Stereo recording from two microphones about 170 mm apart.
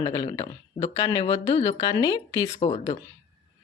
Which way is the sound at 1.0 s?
20° left (ahead or behind).